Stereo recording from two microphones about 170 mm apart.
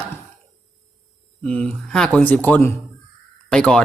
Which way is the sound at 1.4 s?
5° left (ahead or behind).